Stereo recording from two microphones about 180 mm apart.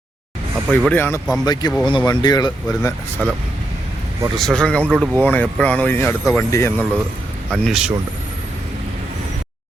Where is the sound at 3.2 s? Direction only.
5° left (ahead or behind).